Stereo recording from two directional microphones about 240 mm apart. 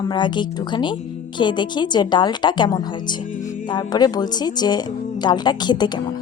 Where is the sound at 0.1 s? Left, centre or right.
Centre.